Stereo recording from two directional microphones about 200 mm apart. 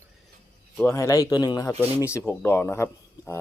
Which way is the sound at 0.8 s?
15° left (ahead or behind).